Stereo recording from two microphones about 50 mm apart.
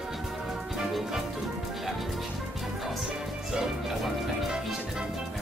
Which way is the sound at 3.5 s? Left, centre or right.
Centre.